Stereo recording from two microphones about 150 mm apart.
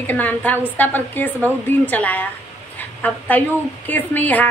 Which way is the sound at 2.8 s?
10° left (ahead or behind).